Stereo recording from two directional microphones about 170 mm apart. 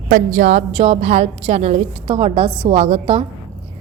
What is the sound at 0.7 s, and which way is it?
A woman's voice, 35° right (ahead or behind).